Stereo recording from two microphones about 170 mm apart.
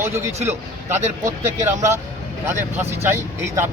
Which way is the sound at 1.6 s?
15° right (ahead or behind).